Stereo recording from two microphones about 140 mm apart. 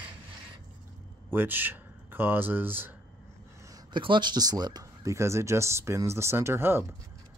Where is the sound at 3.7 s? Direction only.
35° right (ahead or behind); by 6.8 s 15° right (ahead or behind).